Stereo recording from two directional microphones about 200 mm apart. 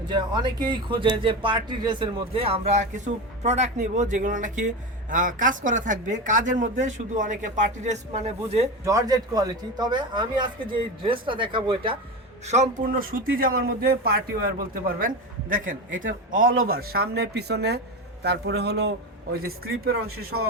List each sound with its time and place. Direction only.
0.1 s speech: 20° right (ahead or behind)
8.8 s a man's voice: 15° right (ahead or behind)
12.5 s a man's voice: 35° right (ahead or behind)